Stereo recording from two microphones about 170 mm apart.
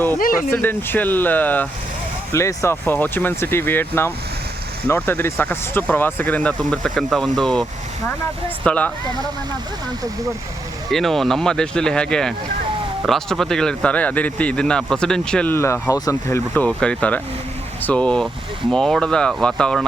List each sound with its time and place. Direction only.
0.2 s speech: 55° left (ahead or behind)
0.5 s speech: 10° left (ahead or behind)
10.9 s speech: centre (ahead or behind); by 16.4 s 20° left (ahead or behind)
16.6 s speech: 5° left (ahead or behind)